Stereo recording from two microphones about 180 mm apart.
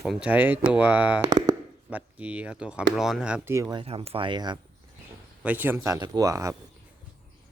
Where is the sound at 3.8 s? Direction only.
30° right (ahead or behind).